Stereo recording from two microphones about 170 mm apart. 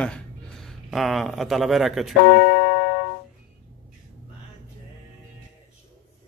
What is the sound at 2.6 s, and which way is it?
Music, 65° left (ahead or behind).